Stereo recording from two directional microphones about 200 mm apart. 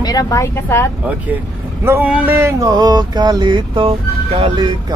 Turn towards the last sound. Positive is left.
turn(degrees=-25)  # may be behind; listen again after turning